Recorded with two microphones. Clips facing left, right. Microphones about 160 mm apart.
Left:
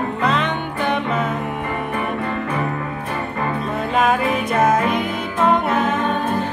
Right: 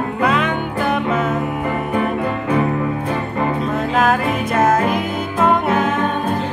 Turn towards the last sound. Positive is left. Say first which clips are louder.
# right 1 dB
turn(degrees=-5)  # may be behind; listen again after turning